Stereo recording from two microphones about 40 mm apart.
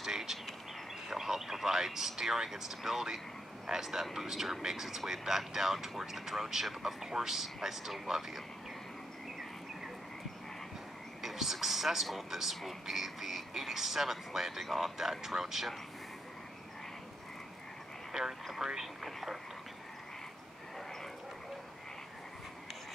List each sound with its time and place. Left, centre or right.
0.0 s bird: centre
1.0 s speech: centre
11.2 s speech: centre
18.1 s speech: centre
19.0 s speech: centre